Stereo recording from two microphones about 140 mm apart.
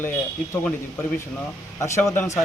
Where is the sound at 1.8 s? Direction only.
20° left (ahead or behind).